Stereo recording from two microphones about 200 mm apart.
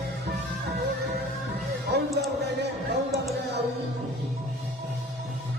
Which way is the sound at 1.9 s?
55° right (ahead or behind).